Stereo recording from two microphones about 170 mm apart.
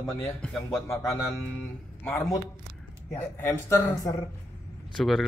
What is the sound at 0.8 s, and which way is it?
A man's voice, 20° left (ahead or behind).